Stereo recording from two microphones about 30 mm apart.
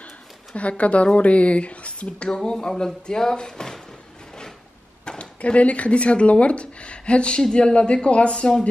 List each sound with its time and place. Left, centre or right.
0.6 s speech: left
2.2 s speech: left
5.0 s a sound: left
5.4 s a woman's voice: left